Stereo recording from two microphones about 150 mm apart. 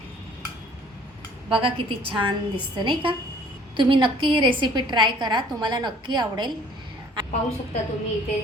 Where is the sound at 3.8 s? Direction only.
35° right (ahead or behind).